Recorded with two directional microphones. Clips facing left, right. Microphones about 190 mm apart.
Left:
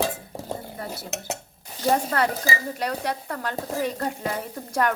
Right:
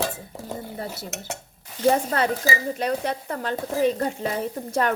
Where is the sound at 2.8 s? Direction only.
20° right (ahead or behind).